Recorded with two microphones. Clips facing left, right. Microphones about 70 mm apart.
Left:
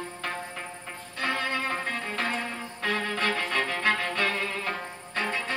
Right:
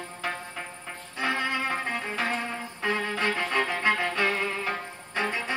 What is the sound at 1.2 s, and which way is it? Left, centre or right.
Music, centre.